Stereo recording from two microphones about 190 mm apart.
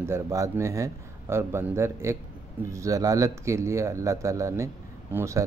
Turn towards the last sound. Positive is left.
turn(degrees=-15)  # may be behind; listen again after turning